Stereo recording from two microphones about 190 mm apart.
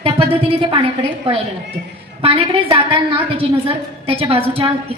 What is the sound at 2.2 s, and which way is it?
A woman's voice, 30° right (ahead or behind).